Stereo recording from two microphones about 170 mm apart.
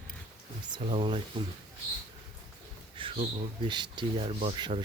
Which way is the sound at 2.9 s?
30° right (ahead or behind).